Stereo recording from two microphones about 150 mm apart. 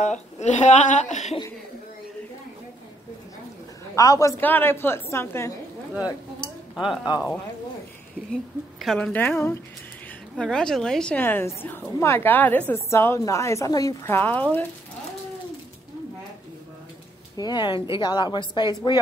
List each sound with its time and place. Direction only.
0.4 s a woman's voice: 50° left (ahead or behind)
3.9 s a woman's voice: 25° left (ahead or behind)
4.4 s a woman's voice: 10° left (ahead or behind)
6.7 s speech: centre (ahead or behind)
8.3 s a woman's voice: centre (ahead or behind)
10.3 s a woman's voice: 5° left (ahead or behind)
17.4 s a woman's voice: 30° left (ahead or behind)